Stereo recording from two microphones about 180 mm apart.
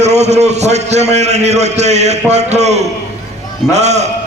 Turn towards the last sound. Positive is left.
turn(degrees=-40)  # may be behind; listen again after turning